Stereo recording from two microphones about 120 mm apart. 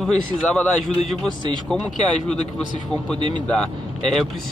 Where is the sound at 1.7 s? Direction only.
5° left (ahead or behind).